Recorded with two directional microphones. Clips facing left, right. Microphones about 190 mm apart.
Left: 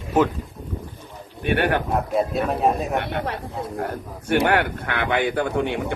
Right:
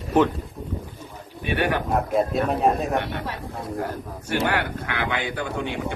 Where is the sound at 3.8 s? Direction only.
55° left (ahead or behind).